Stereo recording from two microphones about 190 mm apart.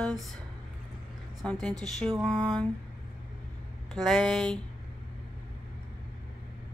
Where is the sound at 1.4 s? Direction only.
5° left (ahead or behind).